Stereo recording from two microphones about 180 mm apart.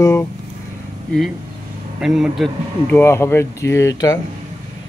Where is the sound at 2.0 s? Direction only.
Centre (ahead or behind).